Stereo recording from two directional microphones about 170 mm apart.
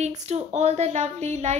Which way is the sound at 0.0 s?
40° right (ahead or behind).